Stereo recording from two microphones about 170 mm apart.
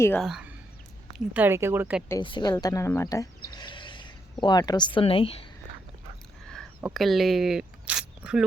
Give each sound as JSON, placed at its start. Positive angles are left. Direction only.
{"t": 0.2, "sound": "speech", "side_deg": -5}
{"t": 2.2, "sound": "a woman's voice", "side_deg": 25}
{"t": 6.5, "sound": "a sound", "side_deg": 0}